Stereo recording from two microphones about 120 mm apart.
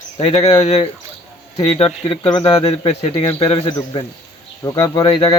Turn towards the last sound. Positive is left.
turn(degrees=35)  # may be behind; listen again after turning